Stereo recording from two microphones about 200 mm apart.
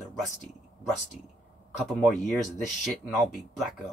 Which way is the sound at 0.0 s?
Centre (ahead or behind).